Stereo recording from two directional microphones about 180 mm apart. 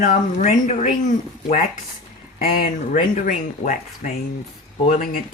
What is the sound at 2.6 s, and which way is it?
Speech, 45° left (ahead or behind).